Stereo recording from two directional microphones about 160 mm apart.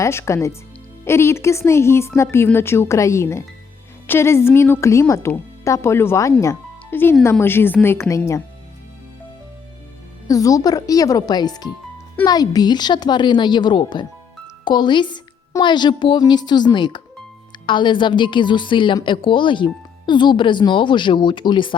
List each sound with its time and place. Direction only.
0.0 s a woman's voice: 15° left (ahead or behind)
10.2 s a woman's voice: 20° left (ahead or behind)